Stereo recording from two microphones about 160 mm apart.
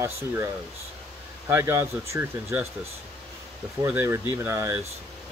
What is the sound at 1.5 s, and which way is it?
Speech, 15° right (ahead or behind).